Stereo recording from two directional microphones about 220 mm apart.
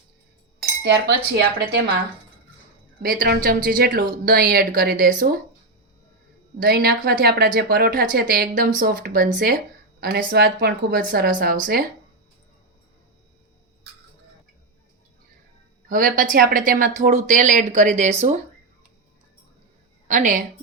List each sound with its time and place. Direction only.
0.8 s speech: 50° right (ahead or behind)
3.0 s speech: 40° right (ahead or behind)
6.6 s speech: 45° right (ahead or behind)
15.9 s speech: 40° right (ahead or behind)
20.1 s a woman's voice: 35° right (ahead or behind)